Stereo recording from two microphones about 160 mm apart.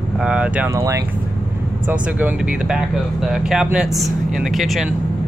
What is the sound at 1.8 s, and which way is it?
Speech, 10° right (ahead or behind).